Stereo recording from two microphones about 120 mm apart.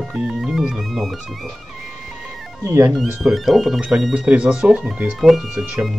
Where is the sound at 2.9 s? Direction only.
Centre (ahead or behind).